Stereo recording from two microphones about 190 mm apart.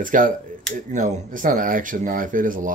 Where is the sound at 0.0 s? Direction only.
45° right (ahead or behind).